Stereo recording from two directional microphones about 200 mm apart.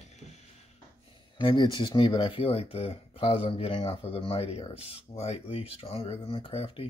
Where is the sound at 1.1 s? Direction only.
25° left (ahead or behind).